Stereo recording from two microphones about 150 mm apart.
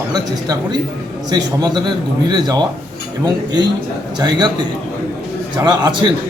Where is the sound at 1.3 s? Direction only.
25° right (ahead or behind).